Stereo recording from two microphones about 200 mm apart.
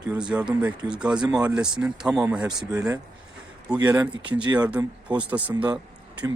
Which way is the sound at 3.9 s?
10° right (ahead or behind).